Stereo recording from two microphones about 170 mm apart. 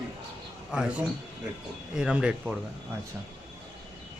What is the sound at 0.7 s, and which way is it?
A man's voice, 5° right (ahead or behind).